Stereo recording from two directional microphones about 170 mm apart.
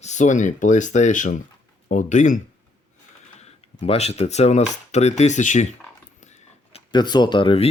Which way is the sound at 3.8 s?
35° left (ahead or behind).